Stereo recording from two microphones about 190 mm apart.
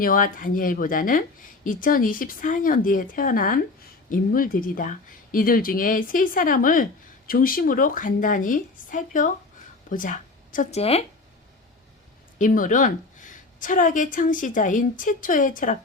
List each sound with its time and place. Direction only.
0.0 s speech: 45° left (ahead or behind)
12.4 s speech: 45° left (ahead or behind)